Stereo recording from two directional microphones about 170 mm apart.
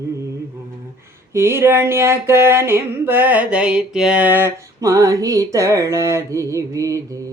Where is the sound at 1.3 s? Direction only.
15° right (ahead or behind).